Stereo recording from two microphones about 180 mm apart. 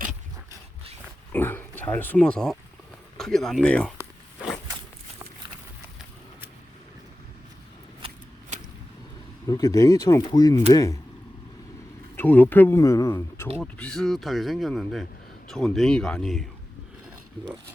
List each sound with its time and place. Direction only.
1.3 s speech: 10° left (ahead or behind)
8.0 s shuffling cards: 30° right (ahead or behind)
9.5 s speech: 20° left (ahead or behind)
12.1 s speech: 10° left (ahead or behind)